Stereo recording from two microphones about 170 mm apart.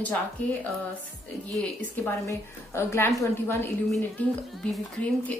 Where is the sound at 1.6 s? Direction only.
10° left (ahead or behind).